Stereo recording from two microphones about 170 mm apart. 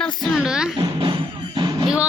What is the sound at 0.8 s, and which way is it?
Music, 30° right (ahead or behind).